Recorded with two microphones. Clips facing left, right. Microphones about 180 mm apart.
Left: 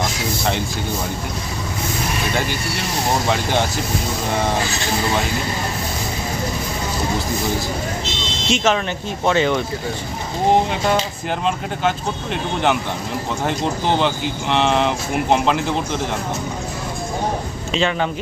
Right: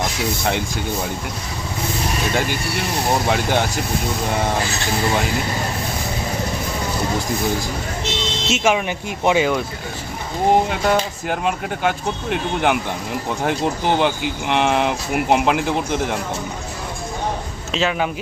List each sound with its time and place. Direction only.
3.2 s speech: 15° right (ahead or behind)
8.4 s speech: 10° right (ahead or behind)
17.7 s speech: 5° right (ahead or behind)